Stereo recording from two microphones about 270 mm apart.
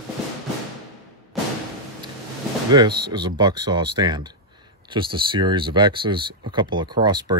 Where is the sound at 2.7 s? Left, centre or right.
Centre.